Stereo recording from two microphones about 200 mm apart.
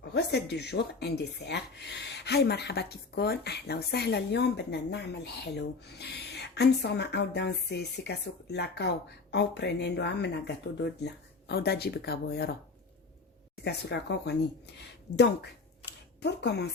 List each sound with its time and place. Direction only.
0.0 s speech: 55° left (ahead or behind)
13.7 s speech: 55° left (ahead or behind)
15.9 s a sound: 55° left (ahead or behind)